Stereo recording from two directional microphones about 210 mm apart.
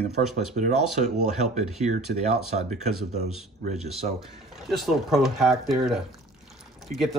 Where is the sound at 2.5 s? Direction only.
30° right (ahead or behind).